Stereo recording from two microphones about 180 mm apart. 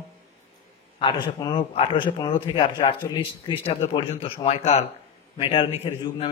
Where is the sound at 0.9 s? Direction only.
25° left (ahead or behind).